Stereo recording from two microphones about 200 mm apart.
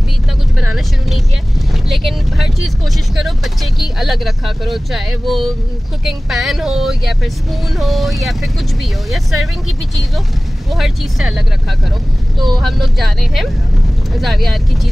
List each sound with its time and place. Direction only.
0.6 s vehicle: centre (ahead or behind)
3.8 s speech: centre (ahead or behind)
10.7 s speech: centre (ahead or behind)
12.4 s speech: 20° right (ahead or behind)
12.6 s speech: centre (ahead or behind)